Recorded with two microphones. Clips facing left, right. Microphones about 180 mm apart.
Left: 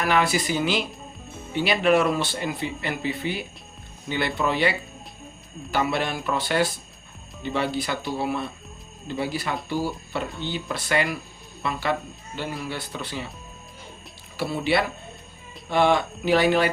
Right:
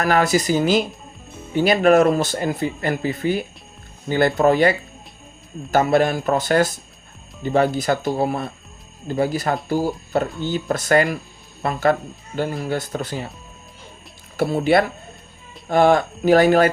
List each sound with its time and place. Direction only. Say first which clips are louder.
0.0 s speech: right 5 dB; 40° right (ahead or behind)
5.7 s speech: right 8 dB; 45° right (ahead or behind)
14.3 s speech: right 7 dB; 45° right (ahead or behind)